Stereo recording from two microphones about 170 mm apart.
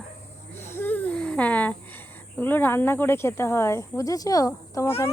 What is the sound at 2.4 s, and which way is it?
Speech, 10° left (ahead or behind).